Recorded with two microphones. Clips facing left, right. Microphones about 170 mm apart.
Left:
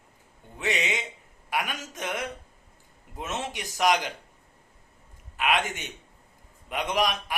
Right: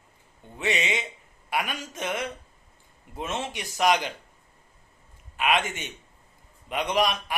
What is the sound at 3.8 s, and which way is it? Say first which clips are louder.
Speech: right 1 dB; 15° left (ahead or behind).